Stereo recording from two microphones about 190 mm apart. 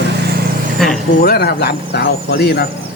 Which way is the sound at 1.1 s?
55° left (ahead or behind).